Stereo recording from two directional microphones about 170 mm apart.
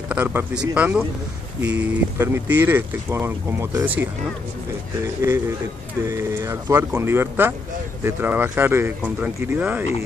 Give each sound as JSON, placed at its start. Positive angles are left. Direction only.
{"t": 0.1, "sound": "speech", "side_deg": -10}
{"t": 6.0, "sound": "speech", "side_deg": -15}